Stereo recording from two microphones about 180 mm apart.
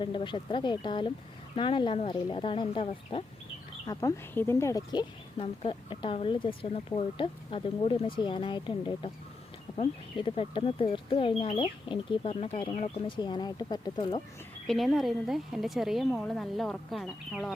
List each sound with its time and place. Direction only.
0.0 s speech: 25° left (ahead or behind)
3.8 s speech: 15° left (ahead or behind)
14.7 s a woman's voice: centre (ahead or behind)